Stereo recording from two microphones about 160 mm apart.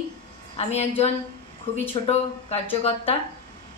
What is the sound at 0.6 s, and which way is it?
A woman's voice, 40° left (ahead or behind).